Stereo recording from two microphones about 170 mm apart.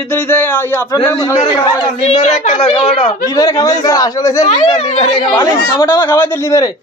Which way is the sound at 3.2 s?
20° left (ahead or behind).